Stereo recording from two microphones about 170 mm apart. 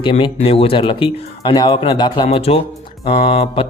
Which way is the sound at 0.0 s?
30° left (ahead or behind).